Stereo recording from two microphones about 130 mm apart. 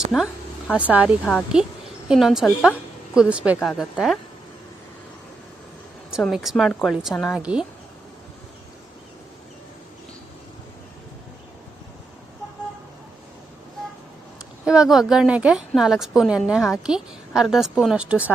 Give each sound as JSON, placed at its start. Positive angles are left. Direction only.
{"t": 0.7, "sound": "a woman's voice", "side_deg": -10}
{"t": 1.2, "sound": "a woman's voice", "side_deg": 10}
{"t": 2.0, "sound": "a woman's voice", "side_deg": -5}
{"t": 3.6, "sound": "a woman's voice", "side_deg": 5}
{"t": 6.1, "sound": "a woman's voice", "side_deg": -5}
{"t": 7.4, "sound": "a woman's voice", "side_deg": -10}
{"t": 14.6, "sound": "a woman's voice", "side_deg": -5}